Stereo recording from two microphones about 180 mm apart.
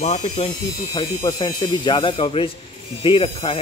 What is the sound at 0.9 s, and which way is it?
Speech, 25° left (ahead or behind).